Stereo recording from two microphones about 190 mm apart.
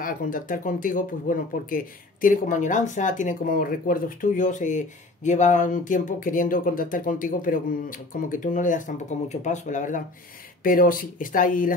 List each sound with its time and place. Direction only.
0.0 s speech: 45° left (ahead or behind)